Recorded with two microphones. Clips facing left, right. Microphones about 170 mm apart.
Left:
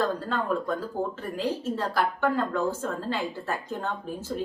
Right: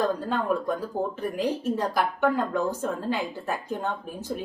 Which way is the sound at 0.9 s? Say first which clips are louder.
Right 3 dB; 15° right (ahead or behind).